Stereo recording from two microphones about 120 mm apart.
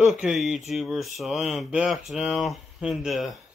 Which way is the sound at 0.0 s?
Centre (ahead or behind).